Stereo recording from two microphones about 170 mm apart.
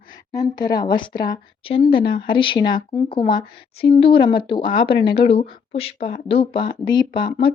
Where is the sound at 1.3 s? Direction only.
30° left (ahead or behind).